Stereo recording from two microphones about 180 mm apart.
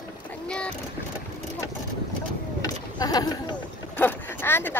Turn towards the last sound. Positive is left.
turn(degrees=10)  # may be behind; listen again after turning